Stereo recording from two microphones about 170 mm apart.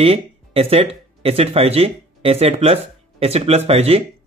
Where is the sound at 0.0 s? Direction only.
35° right (ahead or behind).